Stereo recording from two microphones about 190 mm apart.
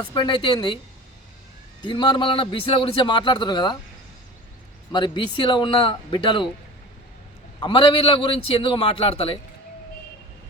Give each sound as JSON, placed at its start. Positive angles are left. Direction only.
{"t": 0.0, "sound": "a man's voice", "side_deg": 25}
{"t": 1.8, "sound": "a man's voice", "side_deg": 25}
{"t": 4.9, "sound": "a man's voice", "side_deg": 25}
{"t": 7.6, "sound": "a man's voice", "side_deg": 25}